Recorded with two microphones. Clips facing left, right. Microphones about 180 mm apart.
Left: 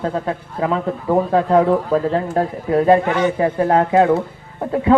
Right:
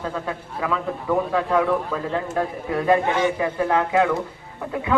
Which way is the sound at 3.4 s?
40° left (ahead or behind).